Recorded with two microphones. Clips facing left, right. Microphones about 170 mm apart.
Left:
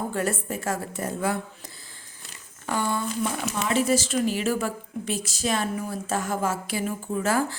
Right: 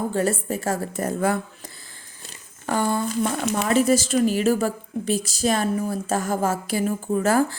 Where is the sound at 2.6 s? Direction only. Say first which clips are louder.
Right 4 dB; 45° right (ahead or behind).